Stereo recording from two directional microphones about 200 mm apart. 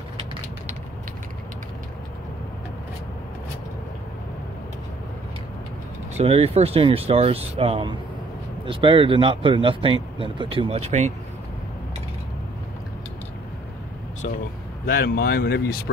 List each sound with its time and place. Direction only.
6.1 s speech: 30° right (ahead or behind)
14.9 s speech: 50° left (ahead or behind)